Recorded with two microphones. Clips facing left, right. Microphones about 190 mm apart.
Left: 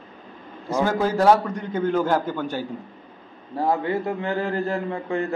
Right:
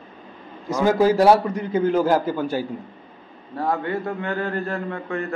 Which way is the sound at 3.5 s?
15° left (ahead or behind).